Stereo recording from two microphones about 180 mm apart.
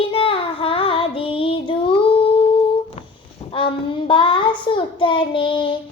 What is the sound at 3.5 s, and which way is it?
Child singing, 30° left (ahead or behind).